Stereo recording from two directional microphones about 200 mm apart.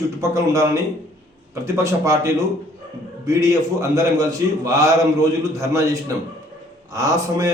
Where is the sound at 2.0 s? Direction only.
15° right (ahead or behind).